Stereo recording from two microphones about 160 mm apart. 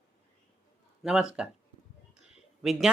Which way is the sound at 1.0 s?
5° right (ahead or behind).